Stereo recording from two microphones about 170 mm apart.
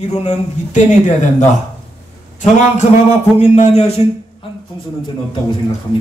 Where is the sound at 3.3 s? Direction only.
40° left (ahead or behind).